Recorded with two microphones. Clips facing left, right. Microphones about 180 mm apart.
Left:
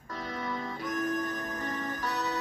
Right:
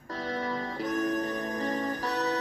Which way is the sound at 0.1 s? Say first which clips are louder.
Right 4 dB; 30° right (ahead or behind).